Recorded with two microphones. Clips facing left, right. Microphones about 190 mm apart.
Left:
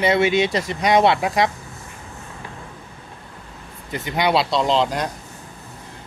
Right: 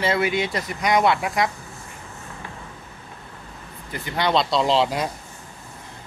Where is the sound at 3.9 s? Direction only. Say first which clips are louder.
Left 2 dB; 15° left (ahead or behind).